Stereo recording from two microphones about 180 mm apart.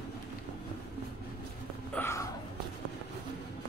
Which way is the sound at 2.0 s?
15° left (ahead or behind).